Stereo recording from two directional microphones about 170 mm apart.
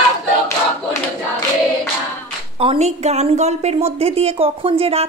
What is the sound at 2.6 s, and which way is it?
A woman's voice, 40° right (ahead or behind).